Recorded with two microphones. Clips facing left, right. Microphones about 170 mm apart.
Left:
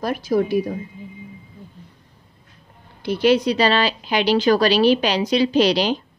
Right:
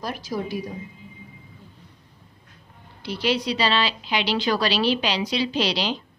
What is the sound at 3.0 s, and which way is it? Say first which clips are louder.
Speech: left 8 dB; 50° left (ahead or behind).